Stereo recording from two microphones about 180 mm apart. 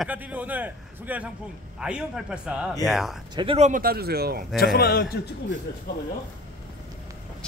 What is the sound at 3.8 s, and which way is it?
Speech, 60° right (ahead or behind).